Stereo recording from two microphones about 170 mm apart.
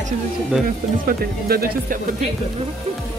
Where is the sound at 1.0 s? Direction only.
55° right (ahead or behind).